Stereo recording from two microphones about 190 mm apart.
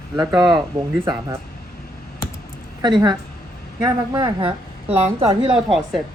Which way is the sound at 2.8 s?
25° right (ahead or behind).